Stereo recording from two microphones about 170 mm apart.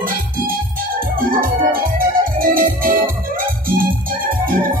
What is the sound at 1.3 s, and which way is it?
Music, 55° right (ahead or behind).